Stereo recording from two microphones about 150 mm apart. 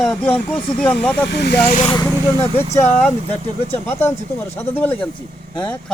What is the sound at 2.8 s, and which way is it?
Speech, 10° left (ahead or behind).